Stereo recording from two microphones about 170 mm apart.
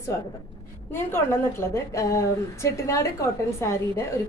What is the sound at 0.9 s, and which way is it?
A woman's voice, 15° left (ahead or behind).